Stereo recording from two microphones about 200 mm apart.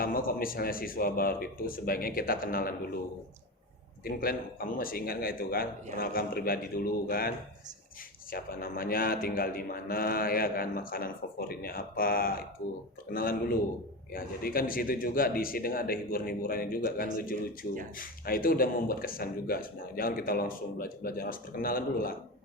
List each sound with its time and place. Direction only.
0.0 s a man's voice: 45° left (ahead or behind)
4.0 s a man's voice: 45° left (ahead or behind)